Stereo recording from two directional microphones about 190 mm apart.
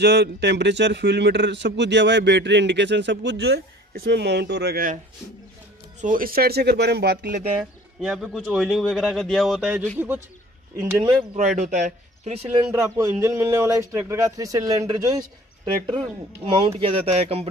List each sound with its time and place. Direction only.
0.0 s speech: 65° right (ahead or behind)
5.9 s speech: 45° right (ahead or behind)
8.0 s speech: 5° right (ahead or behind)
11.3 s speech: 40° right (ahead or behind)
12.7 s speech: 15° right (ahead or behind)